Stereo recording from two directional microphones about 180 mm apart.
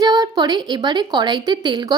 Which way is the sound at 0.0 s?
20° right (ahead or behind).